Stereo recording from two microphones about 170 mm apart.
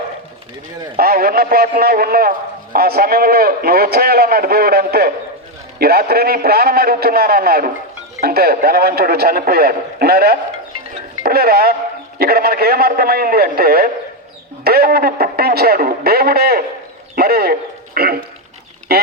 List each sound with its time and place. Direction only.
0.9 s a man's voice: 65° right (ahead or behind)